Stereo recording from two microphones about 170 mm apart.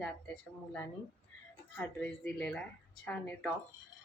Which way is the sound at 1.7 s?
10° left (ahead or behind).